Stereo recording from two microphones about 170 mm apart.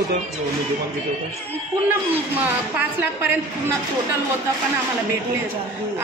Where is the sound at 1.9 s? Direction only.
10° right (ahead or behind).